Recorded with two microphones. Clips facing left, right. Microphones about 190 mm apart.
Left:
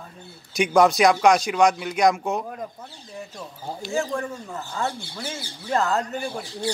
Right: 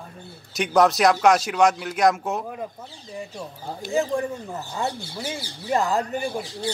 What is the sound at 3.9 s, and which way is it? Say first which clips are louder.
Speech: right 3 dB; 15° right (ahead or behind).